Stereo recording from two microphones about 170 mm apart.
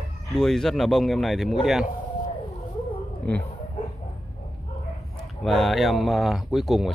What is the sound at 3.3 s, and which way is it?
Speech, 10° left (ahead or behind).